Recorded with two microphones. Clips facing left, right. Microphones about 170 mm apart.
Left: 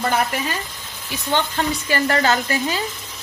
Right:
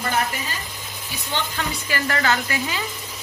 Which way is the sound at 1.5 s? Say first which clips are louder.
Left 5 dB; 35° left (ahead or behind).